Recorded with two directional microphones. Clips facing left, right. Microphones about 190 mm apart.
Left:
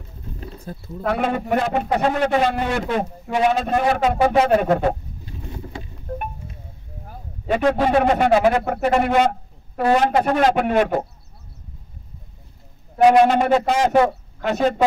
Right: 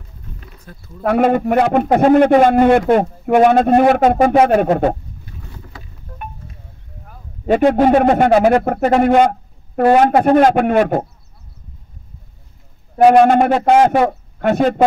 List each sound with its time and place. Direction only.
0.4 s a sound: 30° left (ahead or behind)
1.0 s a man's voice: 50° right (ahead or behind)
5.2 s boat: 25° left (ahead or behind)
7.6 s a man's voice: 50° right (ahead or behind)
12.9 s a man's voice: 50° right (ahead or behind)